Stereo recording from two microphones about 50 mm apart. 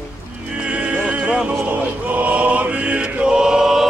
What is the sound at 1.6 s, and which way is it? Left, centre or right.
Choir, right.